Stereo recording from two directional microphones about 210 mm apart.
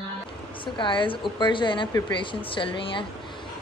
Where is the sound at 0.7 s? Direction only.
25° left (ahead or behind).